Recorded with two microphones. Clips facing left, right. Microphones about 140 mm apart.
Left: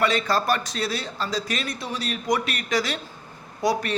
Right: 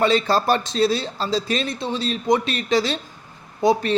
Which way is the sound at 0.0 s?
30° right (ahead or behind).